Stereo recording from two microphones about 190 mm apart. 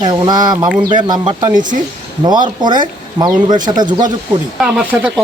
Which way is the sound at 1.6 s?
45° right (ahead or behind).